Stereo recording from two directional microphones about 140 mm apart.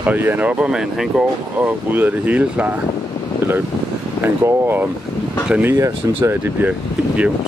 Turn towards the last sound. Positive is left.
turn(degrees=-10)  # may be behind; listen again after turning